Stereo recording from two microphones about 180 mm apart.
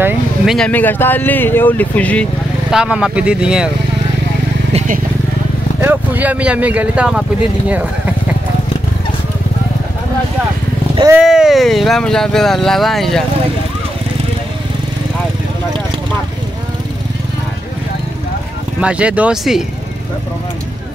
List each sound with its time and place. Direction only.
0.6 s speech: 10° left (ahead or behind)
2.7 s speech: 5° right (ahead or behind)
4.7 s speech: 50° right (ahead or behind)
5.8 s speech: 10° right (ahead or behind)
11.1 s speech: 5° right (ahead or behind)
18.8 s speech: 5° right (ahead or behind)